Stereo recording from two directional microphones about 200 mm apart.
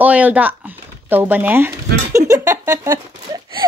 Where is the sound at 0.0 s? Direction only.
5° right (ahead or behind).